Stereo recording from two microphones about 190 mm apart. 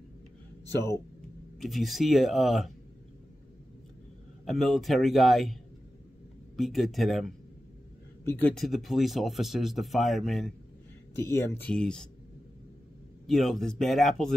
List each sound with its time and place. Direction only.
0.7 s speech: 15° left (ahead or behind)
1.6 s speech: centre (ahead or behind)
4.5 s speech: centre (ahead or behind)
8.3 s speech: 10° left (ahead or behind)
11.1 s speech: 15° left (ahead or behind)
13.3 s speech: centre (ahead or behind)